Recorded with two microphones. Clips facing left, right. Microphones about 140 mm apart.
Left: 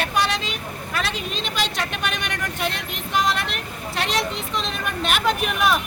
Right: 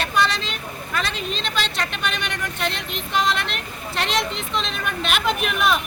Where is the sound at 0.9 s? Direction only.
5° left (ahead or behind).